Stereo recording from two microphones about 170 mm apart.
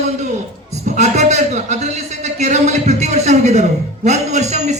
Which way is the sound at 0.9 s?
45° right (ahead or behind).